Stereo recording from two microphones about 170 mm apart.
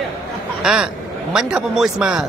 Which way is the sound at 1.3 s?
5° right (ahead or behind).